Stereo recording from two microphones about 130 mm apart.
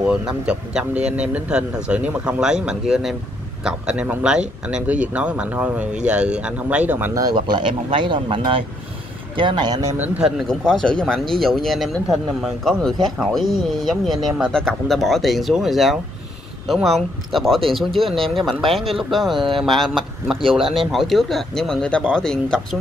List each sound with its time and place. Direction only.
0.0 s speech: 5° right (ahead or behind)
7.2 s speech: 30° right (ahead or behind)
9.9 s speech: 10° right (ahead or behind)
10.5 s speech: 5° left (ahead or behind)